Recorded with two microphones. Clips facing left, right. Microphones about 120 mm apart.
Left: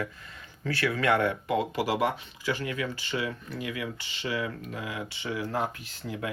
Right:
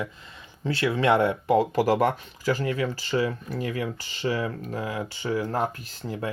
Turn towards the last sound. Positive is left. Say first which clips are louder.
# right 3 dB
turn(degrees=-35)  # may be behind; listen again after turning